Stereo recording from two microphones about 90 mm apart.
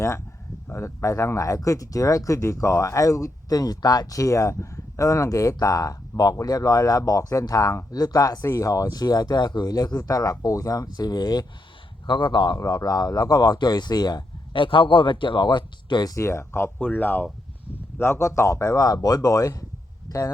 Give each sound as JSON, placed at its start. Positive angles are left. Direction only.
{"t": 0.7, "sound": "speech", "side_deg": 35}
{"t": 12.0, "sound": "speech", "side_deg": 60}
{"t": 12.5, "sound": "speech", "side_deg": 45}
{"t": 14.6, "sound": "speech", "side_deg": 70}
{"t": 16.1, "sound": "speech", "side_deg": 35}